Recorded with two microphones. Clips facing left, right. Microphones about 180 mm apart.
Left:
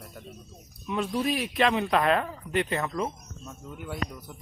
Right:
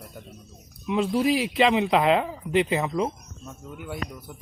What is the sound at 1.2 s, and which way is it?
Speech, 90° right.